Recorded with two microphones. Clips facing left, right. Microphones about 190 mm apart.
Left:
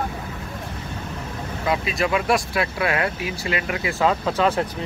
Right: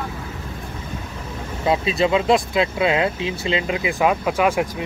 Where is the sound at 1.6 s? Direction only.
25° right (ahead or behind).